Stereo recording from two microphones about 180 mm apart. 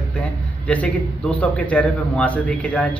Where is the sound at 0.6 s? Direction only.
10° left (ahead or behind).